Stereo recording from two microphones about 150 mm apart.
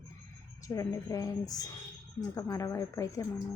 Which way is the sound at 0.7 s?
20° left (ahead or behind).